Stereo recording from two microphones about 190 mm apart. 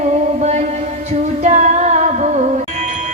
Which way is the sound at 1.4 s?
35° right (ahead or behind).